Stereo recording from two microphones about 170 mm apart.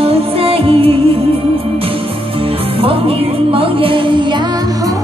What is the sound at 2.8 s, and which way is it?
Music, 35° right (ahead or behind).